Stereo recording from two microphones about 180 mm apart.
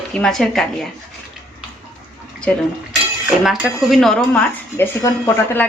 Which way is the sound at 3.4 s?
5° right (ahead or behind).